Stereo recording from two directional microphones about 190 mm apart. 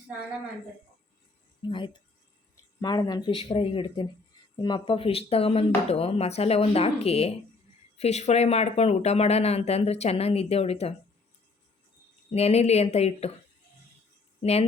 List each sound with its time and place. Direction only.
1.6 s speech: 25° left (ahead or behind)
12.3 s speech: 35° left (ahead or behind)